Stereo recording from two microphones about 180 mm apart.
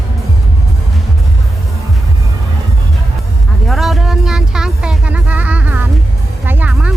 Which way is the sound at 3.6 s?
Centre (ahead or behind).